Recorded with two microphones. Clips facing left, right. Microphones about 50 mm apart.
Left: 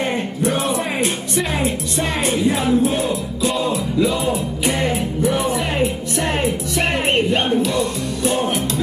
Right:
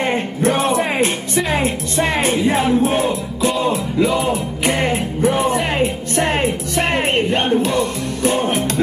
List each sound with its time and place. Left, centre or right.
0.0 s music: right